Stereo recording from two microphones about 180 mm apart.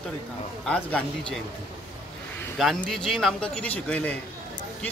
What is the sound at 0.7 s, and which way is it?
Speech, 5° left (ahead or behind).